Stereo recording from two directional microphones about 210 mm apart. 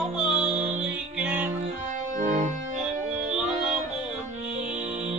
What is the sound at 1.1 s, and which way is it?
Music, 5° right (ahead or behind).